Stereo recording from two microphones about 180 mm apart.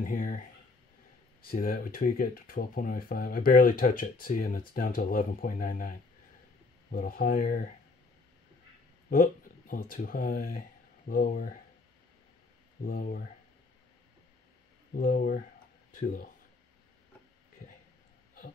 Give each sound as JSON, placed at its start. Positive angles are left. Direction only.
{"t": 0.0, "sound": "speech", "side_deg": 50}
{"t": 1.5, "sound": "speech", "side_deg": 50}
{"t": 9.1, "sound": "speech", "side_deg": 50}
{"t": 12.8, "sound": "speech", "side_deg": 55}
{"t": 15.0, "sound": "speech", "side_deg": 50}